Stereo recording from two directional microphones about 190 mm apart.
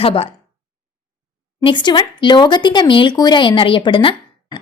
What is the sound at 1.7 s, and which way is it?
Speech, 25° left (ahead or behind).